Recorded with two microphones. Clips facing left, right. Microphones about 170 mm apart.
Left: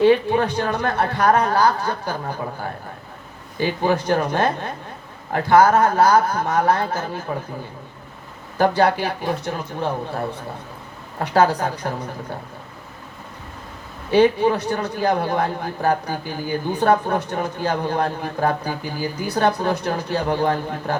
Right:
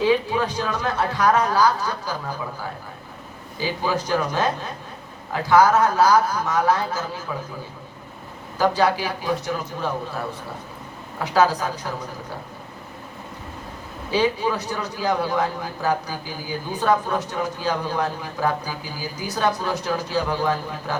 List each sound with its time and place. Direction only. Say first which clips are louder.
0.0 s a man's voice: left 4 dB; 60° left (ahead or behind)
3.6 s a man's voice: left 4 dB; 55° left (ahead or behind)
8.5 s a man's voice: left 2 dB; 55° left (ahead or behind)
11.2 s a man's voice: left 2 dB; 55° left (ahead or behind)
14.1 s a man's voice: left 6 dB; 60° left (ahead or behind)